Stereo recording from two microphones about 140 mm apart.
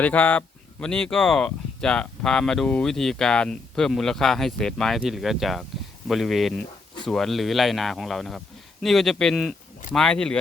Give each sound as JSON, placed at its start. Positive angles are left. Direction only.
{"t": 0.0, "sound": "speech", "side_deg": 10}